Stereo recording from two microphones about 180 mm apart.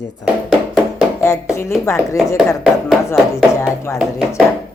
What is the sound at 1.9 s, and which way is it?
Speech, 15° left (ahead or behind).